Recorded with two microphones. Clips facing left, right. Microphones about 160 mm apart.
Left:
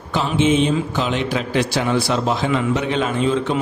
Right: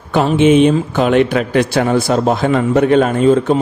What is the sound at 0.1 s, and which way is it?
A man's voice, 60° right (ahead or behind).